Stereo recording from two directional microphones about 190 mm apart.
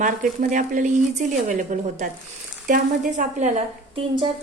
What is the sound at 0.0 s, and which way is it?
Speech, 45° right (ahead or behind).